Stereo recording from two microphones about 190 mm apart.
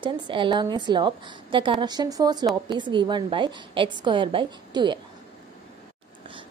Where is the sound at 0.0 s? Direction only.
25° right (ahead or behind).